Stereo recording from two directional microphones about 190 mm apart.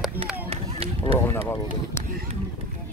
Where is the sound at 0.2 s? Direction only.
10° right (ahead or behind).